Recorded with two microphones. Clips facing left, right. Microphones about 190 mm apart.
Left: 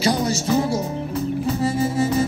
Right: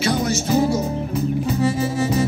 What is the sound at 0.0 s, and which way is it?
Music, 35° left (ahead or behind).